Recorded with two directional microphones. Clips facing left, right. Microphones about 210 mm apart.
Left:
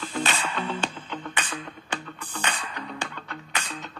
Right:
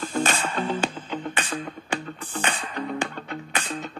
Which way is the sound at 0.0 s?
45° right (ahead or behind).